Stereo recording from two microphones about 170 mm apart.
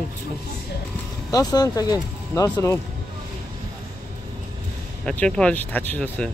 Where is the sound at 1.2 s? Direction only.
20° left (ahead or behind).